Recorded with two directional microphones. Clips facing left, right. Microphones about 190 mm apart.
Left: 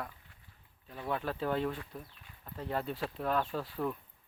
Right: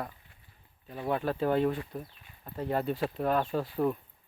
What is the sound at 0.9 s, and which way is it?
Speech, 15° right (ahead or behind).